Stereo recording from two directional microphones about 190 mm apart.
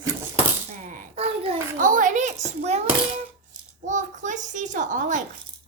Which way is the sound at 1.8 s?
45° right (ahead or behind).